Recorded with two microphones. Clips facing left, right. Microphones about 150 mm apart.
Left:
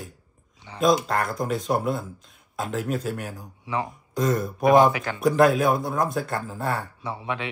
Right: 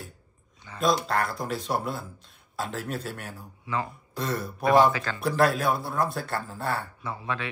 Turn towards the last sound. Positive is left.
turn(degrees=20)  # may be behind; listen again after turning